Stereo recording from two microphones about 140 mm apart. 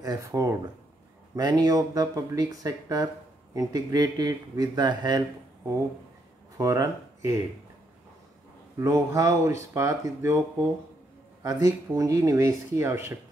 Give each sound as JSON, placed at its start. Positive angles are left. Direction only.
{"t": 0.0, "sound": "speech", "side_deg": -25}
{"t": 6.6, "sound": "speech", "side_deg": -25}
{"t": 8.7, "sound": "speech", "side_deg": -20}
{"t": 11.4, "sound": "speech", "side_deg": -25}